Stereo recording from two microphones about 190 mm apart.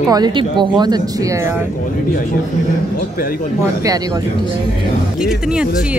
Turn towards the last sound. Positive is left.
turn(degrees=-5)  # may be behind; listen again after turning